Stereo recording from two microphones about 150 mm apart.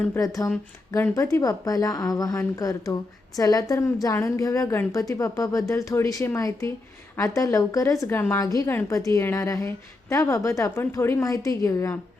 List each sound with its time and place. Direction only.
0.0 s a woman's voice: 15° left (ahead or behind)